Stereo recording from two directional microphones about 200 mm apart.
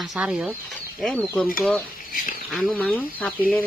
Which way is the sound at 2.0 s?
45° left (ahead or behind).